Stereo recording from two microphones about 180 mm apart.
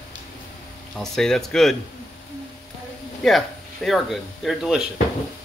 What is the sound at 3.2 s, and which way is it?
A man's voice, centre (ahead or behind).